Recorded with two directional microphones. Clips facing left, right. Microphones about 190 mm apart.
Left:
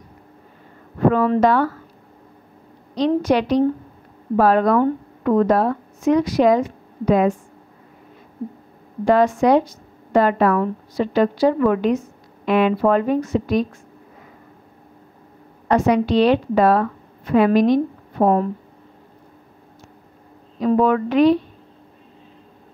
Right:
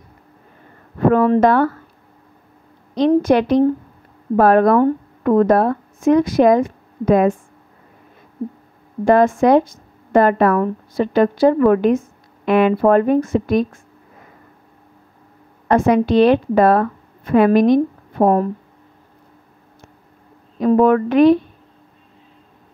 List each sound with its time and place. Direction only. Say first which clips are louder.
1.1 s speech: right 5 dB; 50° right (ahead or behind)
2.9 s speech: right 4 dB; 50° right (ahead or behind)
9.0 s speech: right 2 dB; 50° right (ahead or behind)
15.7 s speech: right 3 dB; 50° right (ahead or behind)
20.6 s speech: right 4 dB; 50° right (ahead or behind)